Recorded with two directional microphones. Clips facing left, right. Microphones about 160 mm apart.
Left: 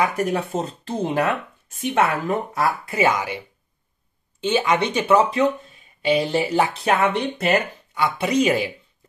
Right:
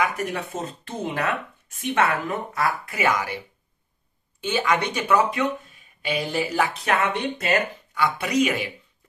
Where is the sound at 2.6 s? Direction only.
25° left (ahead or behind).